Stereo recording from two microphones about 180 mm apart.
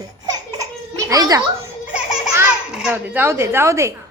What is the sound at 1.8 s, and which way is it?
Music, 5° right (ahead or behind).